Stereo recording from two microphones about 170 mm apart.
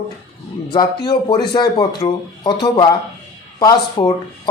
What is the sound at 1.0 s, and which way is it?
Speech, 25° left (ahead or behind).